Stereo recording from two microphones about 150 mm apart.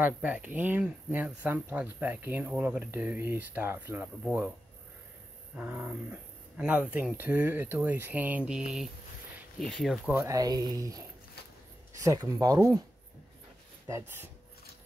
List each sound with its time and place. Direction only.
0.0 s speech: 10° right (ahead or behind)
5.6 s speech: 10° right (ahead or behind)
10.2 s speech: 25° right (ahead or behind)
13.8 s speech: 15° right (ahead or behind)